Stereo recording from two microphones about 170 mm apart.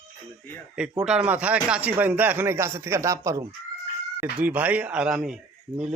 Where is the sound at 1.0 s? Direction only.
5° right (ahead or behind).